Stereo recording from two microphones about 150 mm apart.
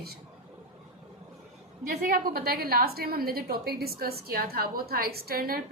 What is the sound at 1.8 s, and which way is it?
A woman's voice, 70° right (ahead or behind).